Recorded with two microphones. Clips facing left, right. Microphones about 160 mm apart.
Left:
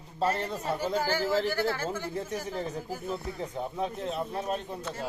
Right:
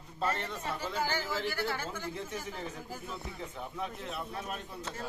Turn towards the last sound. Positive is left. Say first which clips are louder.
# left 7 dB
turn(degrees=35)  # may be behind; listen again after turning